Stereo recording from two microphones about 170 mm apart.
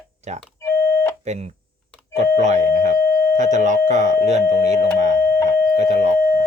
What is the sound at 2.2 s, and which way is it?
Doorbell, 40° right (ahead or behind).